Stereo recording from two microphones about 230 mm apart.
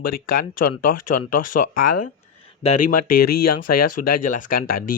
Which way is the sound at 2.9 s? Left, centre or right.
Left.